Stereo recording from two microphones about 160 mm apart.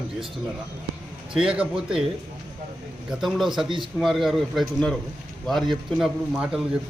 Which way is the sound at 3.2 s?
Centre (ahead or behind).